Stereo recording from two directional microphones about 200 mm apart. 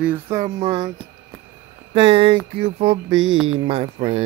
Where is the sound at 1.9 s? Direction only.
30° right (ahead or behind).